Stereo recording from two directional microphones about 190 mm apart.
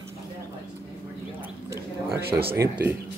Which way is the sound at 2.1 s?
55° right (ahead or behind).